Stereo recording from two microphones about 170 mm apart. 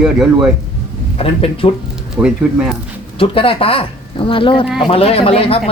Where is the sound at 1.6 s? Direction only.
30° left (ahead or behind).